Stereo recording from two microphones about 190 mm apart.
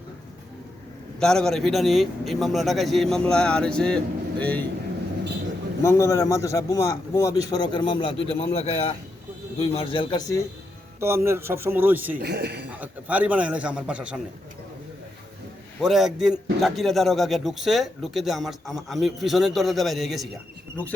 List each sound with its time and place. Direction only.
1.2 s a man's voice: 5° left (ahead or behind)
5.8 s a man's voice: 15° left (ahead or behind)
11.0 s a man's voice: 15° right (ahead or behind)
12.2 s a man's voice: 60° right (ahead or behind)
12.7 s a man's voice: 10° right (ahead or behind)
15.8 s a man's voice: centre (ahead or behind)